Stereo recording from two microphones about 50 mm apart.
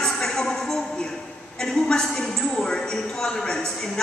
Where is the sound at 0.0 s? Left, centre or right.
Centre.